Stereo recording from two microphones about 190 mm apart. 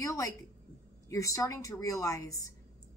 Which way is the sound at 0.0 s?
15° left (ahead or behind).